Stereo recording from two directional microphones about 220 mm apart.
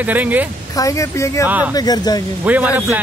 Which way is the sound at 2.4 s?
5° right (ahead or behind).